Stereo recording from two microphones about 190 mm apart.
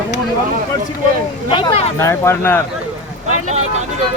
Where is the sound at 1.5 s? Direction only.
25° left (ahead or behind).